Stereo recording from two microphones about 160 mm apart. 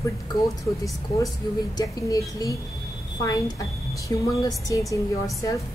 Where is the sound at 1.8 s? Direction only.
20° left (ahead or behind).